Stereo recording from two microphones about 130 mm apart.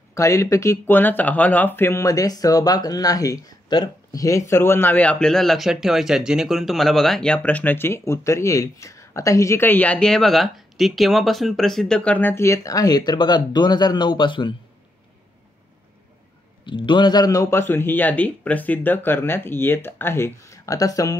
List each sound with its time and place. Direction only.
0.1 s speech: 25° left (ahead or behind)
16.6 s speech: 40° left (ahead or behind)